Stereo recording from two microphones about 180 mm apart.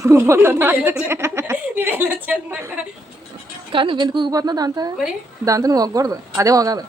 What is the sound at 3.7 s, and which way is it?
Speech, 25° right (ahead or behind).